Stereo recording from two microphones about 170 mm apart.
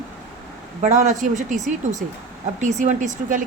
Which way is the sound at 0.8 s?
50° right (ahead or behind).